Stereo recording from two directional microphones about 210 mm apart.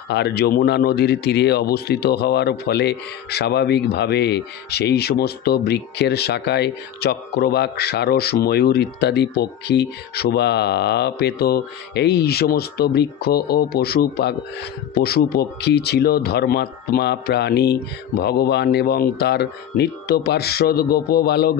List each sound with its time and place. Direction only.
0.1 s speech: 50° left (ahead or behind)